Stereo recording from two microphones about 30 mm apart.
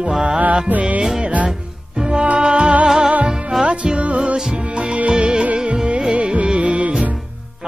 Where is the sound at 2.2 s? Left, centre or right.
Right.